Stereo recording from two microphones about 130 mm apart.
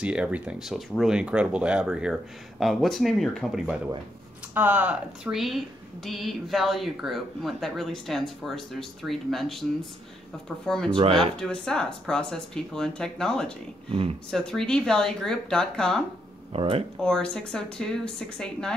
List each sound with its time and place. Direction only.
0.0 s speech: 10° right (ahead or behind)
4.6 s speech: 15° right (ahead or behind); by 11.0 s 5° left (ahead or behind)
11.0 s speech: 45° right (ahead or behind)
11.3 s speech: 5° left (ahead or behind)
13.8 s speech: 45° right (ahead or behind)
14.3 s speech: 5° left (ahead or behind)
16.5 s speech: 45° right (ahead or behind)
17.0 s speech: 5° left (ahead or behind)